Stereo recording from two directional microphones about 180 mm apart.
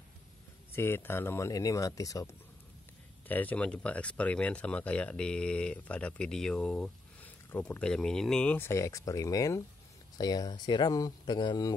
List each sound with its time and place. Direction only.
0.7 s speech: 10° left (ahead or behind)